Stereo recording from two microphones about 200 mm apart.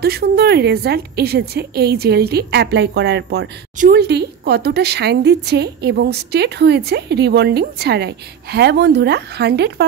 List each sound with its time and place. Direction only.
0.0 s a woman's voice: 50° right (ahead or behind)
3.7 s a woman's voice: 45° right (ahead or behind)